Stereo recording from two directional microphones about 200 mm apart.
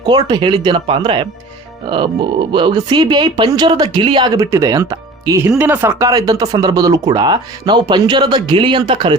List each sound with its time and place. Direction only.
0.0 s speech: 20° right (ahead or behind)
2.5 s speech: 25° right (ahead or behind)